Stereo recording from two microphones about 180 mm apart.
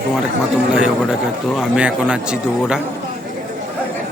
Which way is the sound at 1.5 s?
5° right (ahead or behind).